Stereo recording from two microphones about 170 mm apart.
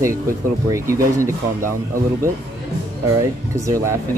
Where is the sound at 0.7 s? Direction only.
20° right (ahead or behind).